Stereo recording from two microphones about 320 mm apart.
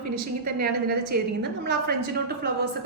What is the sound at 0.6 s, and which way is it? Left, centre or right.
Speech, right.